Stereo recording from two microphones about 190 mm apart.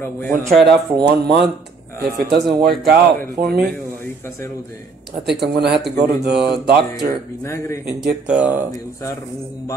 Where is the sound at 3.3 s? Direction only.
55° right (ahead or behind).